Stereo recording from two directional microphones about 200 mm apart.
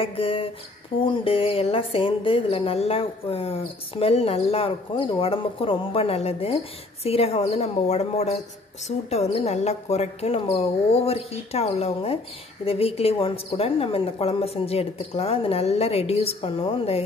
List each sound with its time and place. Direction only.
0.0 s speech: 25° left (ahead or behind)